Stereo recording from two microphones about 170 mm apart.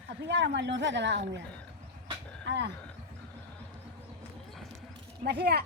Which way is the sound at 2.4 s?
80° right.